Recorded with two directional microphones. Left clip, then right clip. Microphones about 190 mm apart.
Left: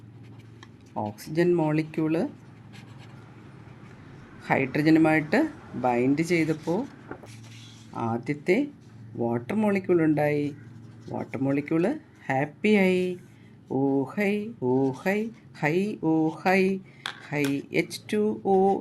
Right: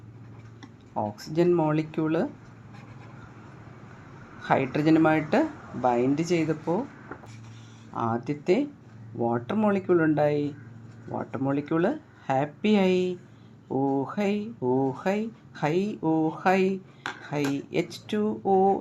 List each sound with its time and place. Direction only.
0.9 s speech: 20° left (ahead or behind)
4.4 s speech: 20° left (ahead or behind)
14.1 s speech: 25° left (ahead or behind)
14.6 s speech: 15° left (ahead or behind)